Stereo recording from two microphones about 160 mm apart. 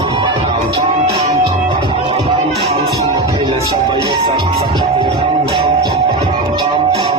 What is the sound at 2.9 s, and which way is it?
Music, 25° right (ahead or behind).